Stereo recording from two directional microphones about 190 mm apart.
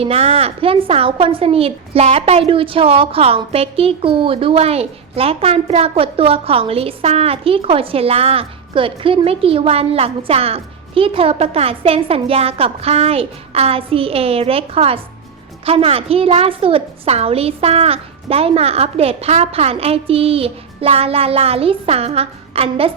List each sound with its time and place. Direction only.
0.0 s a woman's voice: 30° right (ahead or behind)